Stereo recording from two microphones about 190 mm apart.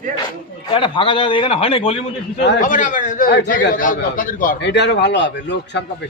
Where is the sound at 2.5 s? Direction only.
45° left (ahead or behind).